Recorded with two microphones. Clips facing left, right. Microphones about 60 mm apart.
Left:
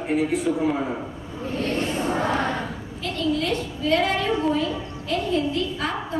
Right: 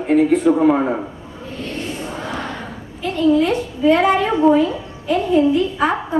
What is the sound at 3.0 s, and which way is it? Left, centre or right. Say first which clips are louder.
A woman's voice: right 9 dB; right.